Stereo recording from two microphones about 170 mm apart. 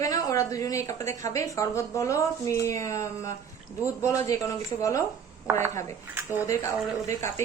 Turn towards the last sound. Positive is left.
turn(degrees=15)  # may be behind; listen again after turning